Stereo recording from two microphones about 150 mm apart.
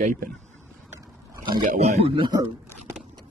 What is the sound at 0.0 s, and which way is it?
Speech, 60° right (ahead or behind).